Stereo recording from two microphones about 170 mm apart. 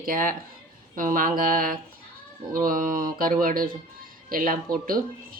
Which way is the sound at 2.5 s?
55° right (ahead or behind).